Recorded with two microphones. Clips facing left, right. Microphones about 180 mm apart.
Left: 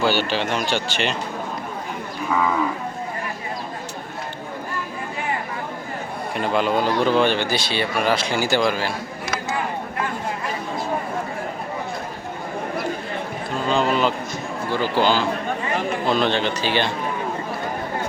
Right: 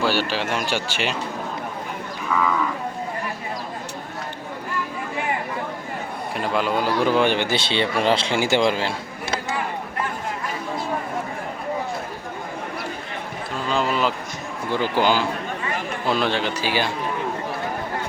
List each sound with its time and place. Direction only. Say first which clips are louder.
0.0 s speech: left 2 dB; centre (ahead or behind)
6.3 s a man's voice: left 2 dB; centre (ahead or behind); by 8.9 s 20° right (ahead or behind)
13.7 s speech: left 2 dB; centre (ahead or behind)
14.7 s speech: even; 15° right (ahead or behind)